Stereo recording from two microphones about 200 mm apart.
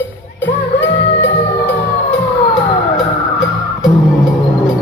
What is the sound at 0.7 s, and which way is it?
Music, 65° left (ahead or behind).